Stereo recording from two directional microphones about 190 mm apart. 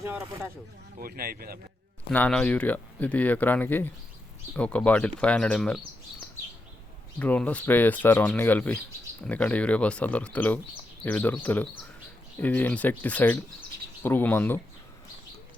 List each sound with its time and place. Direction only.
0.9 s speech: 50° right (ahead or behind)
2.0 s speech: 5° left (ahead or behind)
7.2 s speech: 10° left (ahead or behind)